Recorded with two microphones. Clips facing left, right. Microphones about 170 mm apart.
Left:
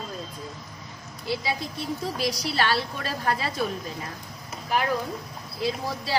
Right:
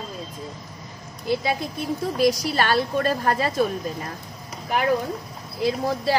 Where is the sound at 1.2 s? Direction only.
55° right (ahead or behind).